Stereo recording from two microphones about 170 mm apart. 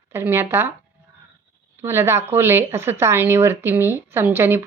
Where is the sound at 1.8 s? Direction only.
15° right (ahead or behind).